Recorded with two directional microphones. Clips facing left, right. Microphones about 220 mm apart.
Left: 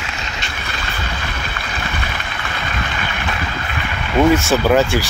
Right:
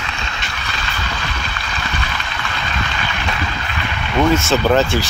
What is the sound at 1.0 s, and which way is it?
Vehicle, 55° left (ahead or behind).